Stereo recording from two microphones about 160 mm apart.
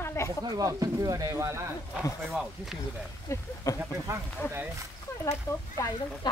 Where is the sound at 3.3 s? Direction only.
15° left (ahead or behind).